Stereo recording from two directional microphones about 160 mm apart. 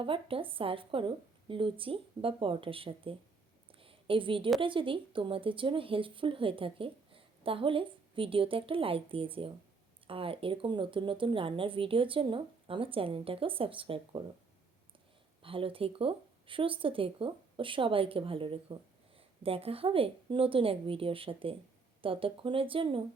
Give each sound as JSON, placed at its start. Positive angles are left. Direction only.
{"t": 0.0, "sound": "speech", "side_deg": -35}
{"t": 3.7, "sound": "a sound", "side_deg": -35}
{"t": 4.6, "sound": "speech", "side_deg": -30}
{"t": 15.4, "sound": "speech", "side_deg": -35}